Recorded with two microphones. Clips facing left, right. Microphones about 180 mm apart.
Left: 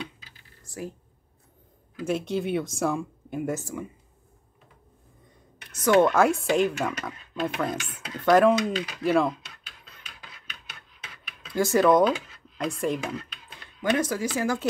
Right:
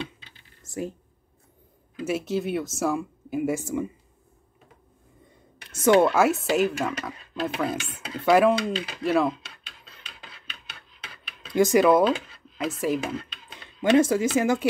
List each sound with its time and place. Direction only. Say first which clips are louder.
0.2 s computer keyboard: even; 25° right (ahead or behind)
2.0 s speech: even; 5° right (ahead or behind)
3.6 s speech: right 7 dB; 20° right (ahead or behind)
5.7 s speech: right 4 dB; 25° right (ahead or behind)
5.9 s speech: left 2 dB; 5° right (ahead or behind)
8.7 s speech: left 1 dB; 30° right (ahead or behind)
9.0 s speech: even; centre (ahead or behind)
9.6 s a sound: right 1 dB; 30° right (ahead or behind); by 12.0 s 10° right (ahead or behind)
12.5 s speech: right 2 dB; 5° right (ahead or behind)
13.0 s speech: right 2 dB; 25° right (ahead or behind)